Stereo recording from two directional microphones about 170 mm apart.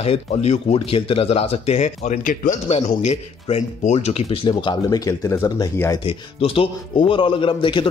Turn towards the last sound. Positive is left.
turn(degrees=30)  # may be behind; listen again after turning